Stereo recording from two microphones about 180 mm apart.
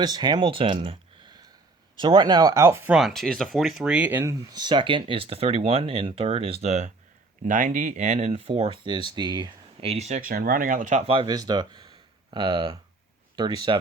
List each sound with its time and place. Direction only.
0.0 s speech: 25° right (ahead or behind)
2.9 s speech: centre (ahead or behind); by 13.7 s 25° right (ahead or behind)